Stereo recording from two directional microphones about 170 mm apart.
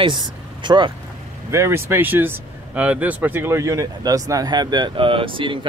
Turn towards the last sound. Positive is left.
turn(degrees=-30)  # may be behind; listen again after turning